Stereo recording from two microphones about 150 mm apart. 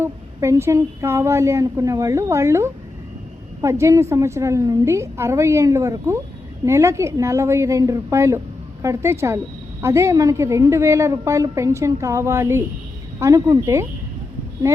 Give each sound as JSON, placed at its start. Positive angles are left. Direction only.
{"t": 0.0, "sound": "a woman's voice", "side_deg": -20}